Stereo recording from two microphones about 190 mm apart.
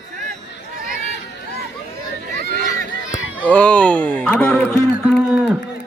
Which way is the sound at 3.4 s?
5° left (ahead or behind).